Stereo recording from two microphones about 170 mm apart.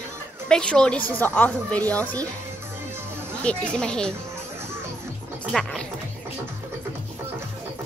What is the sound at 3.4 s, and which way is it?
Speech, 5° left (ahead or behind).